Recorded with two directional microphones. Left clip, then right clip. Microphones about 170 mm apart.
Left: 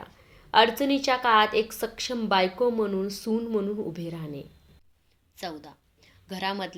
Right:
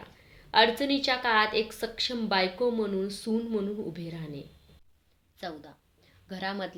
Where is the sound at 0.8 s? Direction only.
15° left (ahead or behind).